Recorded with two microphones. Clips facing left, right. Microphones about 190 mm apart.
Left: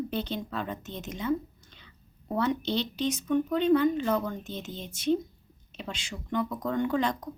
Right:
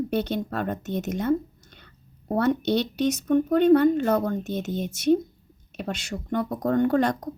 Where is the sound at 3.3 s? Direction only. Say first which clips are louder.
Right 6 dB; 50° right (ahead or behind).